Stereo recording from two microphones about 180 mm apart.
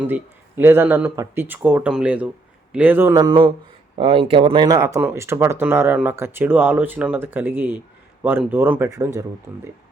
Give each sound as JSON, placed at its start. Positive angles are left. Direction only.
{"t": 0.0, "sound": "speech", "side_deg": -10}